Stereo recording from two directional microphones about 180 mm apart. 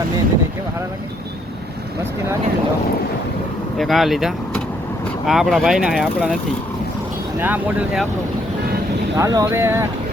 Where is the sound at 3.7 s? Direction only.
Centre (ahead or behind).